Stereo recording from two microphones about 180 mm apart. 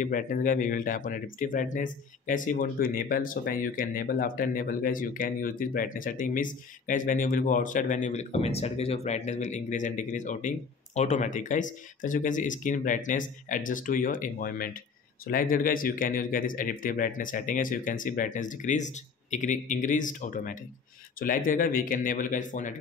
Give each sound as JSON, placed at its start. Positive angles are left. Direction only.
{"t": 0.0, "sound": "speech", "side_deg": 45}